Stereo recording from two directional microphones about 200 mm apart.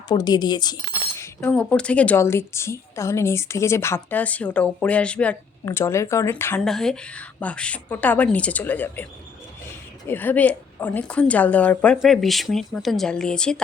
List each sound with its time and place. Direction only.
0.1 s a woman's voice: 20° left (ahead or behind)
10.1 s a woman's voice: 10° left (ahead or behind)